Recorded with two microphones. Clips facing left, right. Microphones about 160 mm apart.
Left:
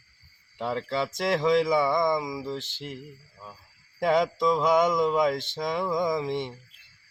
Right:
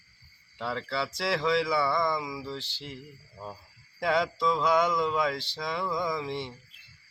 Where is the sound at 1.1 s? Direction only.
45° left (ahead or behind).